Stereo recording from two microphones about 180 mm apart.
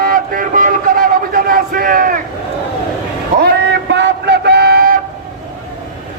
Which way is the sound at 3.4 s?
65° right (ahead or behind).